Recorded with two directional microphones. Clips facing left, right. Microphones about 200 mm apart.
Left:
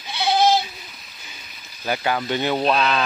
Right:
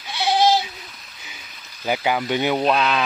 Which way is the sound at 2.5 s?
Centre (ahead or behind).